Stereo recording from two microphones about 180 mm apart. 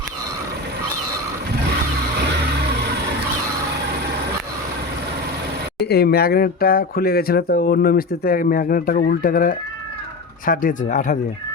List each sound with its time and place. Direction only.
5.8 s speech: 60° left (ahead or behind); by 11.2 s 45° left (ahead or behind)